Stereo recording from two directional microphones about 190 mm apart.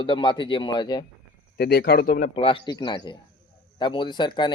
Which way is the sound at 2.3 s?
25° left (ahead or behind).